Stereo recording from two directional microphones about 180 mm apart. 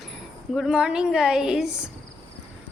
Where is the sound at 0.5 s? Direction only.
5° right (ahead or behind).